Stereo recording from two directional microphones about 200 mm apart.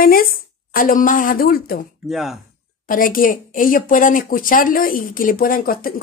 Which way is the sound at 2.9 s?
45° left (ahead or behind).